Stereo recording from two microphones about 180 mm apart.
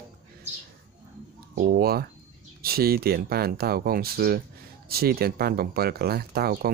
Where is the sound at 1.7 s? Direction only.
60° right (ahead or behind).